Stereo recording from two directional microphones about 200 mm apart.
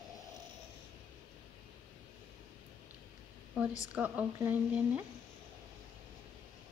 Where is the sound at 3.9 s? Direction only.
10° right (ahead or behind).